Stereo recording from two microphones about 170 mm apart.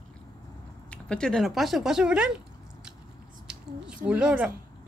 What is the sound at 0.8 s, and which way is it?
Speech, 5° left (ahead or behind).